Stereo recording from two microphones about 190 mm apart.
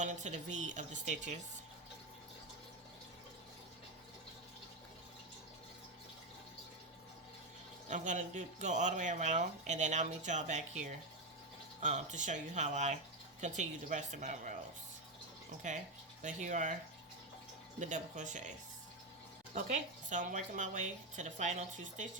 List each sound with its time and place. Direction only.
0.0 s speech: 40° right (ahead or behind)
7.9 s speech: 40° right (ahead or behind)
15.6 s speech: 40° right (ahead or behind)
17.7 s speech: 40° right (ahead or behind)
19.5 s speech: 40° right (ahead or behind)